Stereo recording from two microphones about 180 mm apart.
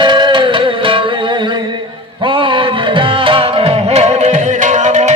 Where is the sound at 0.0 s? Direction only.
25° right (ahead or behind).